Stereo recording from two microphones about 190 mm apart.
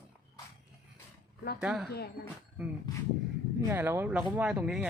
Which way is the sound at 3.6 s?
10° right (ahead or behind).